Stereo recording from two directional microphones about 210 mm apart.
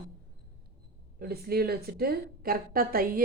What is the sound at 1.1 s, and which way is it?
A woman's voice, 45° right (ahead or behind).